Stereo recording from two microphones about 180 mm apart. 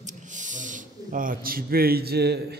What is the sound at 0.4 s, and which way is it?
Speech, 45° right (ahead or behind).